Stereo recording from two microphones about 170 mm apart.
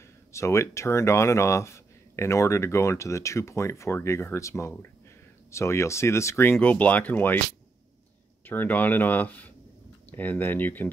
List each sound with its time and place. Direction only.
0.3 s speech: 15° left (ahead or behind)
8.5 s speech: 10° left (ahead or behind)